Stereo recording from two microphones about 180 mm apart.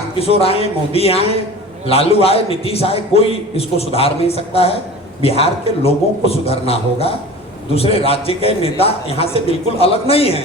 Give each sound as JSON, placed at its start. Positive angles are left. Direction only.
{"t": 0.2, "sound": "a man's voice", "side_deg": 35}